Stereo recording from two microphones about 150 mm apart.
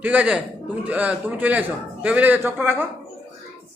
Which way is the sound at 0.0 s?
10° right (ahead or behind).